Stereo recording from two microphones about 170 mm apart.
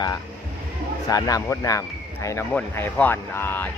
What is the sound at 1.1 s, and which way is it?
A man's voice, 20° left (ahead or behind).